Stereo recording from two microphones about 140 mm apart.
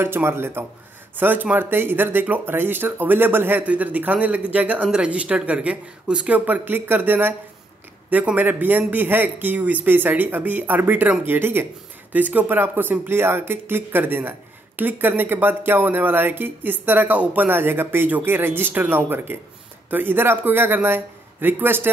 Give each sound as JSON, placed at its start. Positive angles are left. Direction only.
{"t": 0.0, "sound": "speech", "side_deg": -15}